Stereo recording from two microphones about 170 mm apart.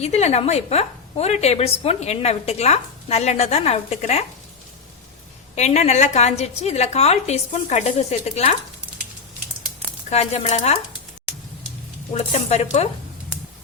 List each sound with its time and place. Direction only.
0.0 s a woman's voice: 40° left (ahead or behind)
5.5 s a woman's voice: 40° left (ahead or behind)
8.9 s a sound: 10° right (ahead or behind)
10.1 s a woman's voice: 40° left (ahead or behind)
12.1 s a woman's voice: 40° left (ahead or behind)